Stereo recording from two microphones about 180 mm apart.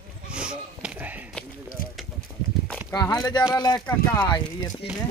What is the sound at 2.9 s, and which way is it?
Speech, 20° left (ahead or behind).